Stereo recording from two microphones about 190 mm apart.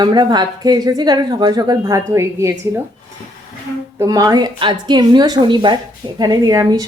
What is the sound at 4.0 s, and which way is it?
Speech, 20° right (ahead or behind).